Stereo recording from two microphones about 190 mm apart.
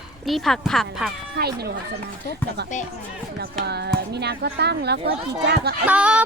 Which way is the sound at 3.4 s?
60° right (ahead or behind).